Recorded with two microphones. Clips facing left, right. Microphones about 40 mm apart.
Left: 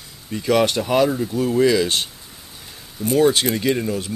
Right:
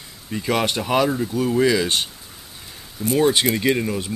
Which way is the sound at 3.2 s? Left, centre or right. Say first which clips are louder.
Left 1 dB; centre.